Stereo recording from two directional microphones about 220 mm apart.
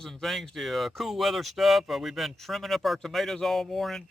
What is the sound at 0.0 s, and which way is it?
Speech, centre (ahead or behind).